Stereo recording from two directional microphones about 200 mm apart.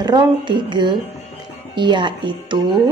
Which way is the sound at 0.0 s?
20° right (ahead or behind).